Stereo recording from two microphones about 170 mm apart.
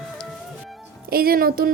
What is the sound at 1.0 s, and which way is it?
Speech, 60° right (ahead or behind).